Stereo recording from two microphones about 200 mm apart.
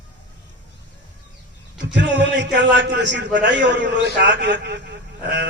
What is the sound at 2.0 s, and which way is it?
A man's voice, 60° right (ahead or behind).